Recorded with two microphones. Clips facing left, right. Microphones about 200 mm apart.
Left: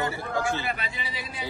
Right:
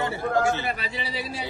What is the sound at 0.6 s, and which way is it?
Speech, 35° right (ahead or behind).